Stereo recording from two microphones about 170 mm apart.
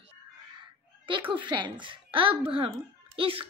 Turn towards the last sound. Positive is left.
turn(degrees=-30)  # may be behind; listen again after turning